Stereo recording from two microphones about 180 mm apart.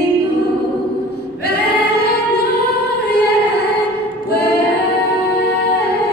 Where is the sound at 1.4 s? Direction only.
65° left (ahead or behind).